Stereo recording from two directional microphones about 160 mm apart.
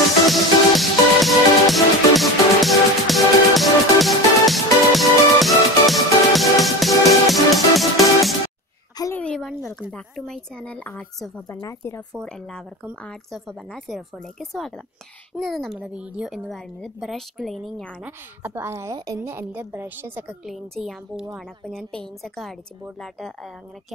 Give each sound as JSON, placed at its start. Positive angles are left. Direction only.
{"t": 0.3, "sound": "music", "side_deg": 0}
{"t": 9.1, "sound": "a sound", "side_deg": 5}
{"t": 9.8, "sound": "speech", "side_deg": 0}
{"t": 11.4, "sound": "speech", "side_deg": 20}
{"t": 12.1, "sound": "a woman's voice", "side_deg": 5}
{"t": 18.0, "sound": "a woman's voice", "side_deg": -15}